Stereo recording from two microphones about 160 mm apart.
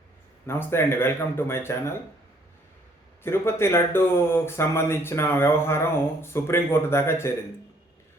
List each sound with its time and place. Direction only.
0.4 s speech: 15° left (ahead or behind)
3.2 s speech: 15° left (ahead or behind)